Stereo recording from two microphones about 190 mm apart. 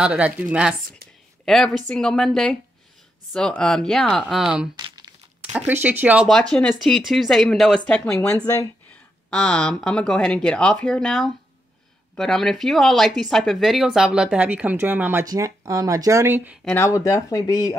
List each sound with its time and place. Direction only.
0.0 s speech: 5° right (ahead or behind)
4.7 s crumpling: 20° right (ahead or behind)
5.7 s speech: 10° right (ahead or behind)
16.6 s speech: 15° left (ahead or behind)